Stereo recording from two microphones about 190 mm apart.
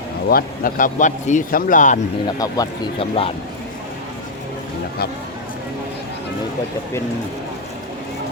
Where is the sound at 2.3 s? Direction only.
20° left (ahead or behind).